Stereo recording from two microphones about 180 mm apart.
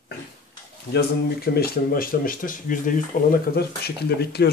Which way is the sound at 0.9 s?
60° left (ahead or behind).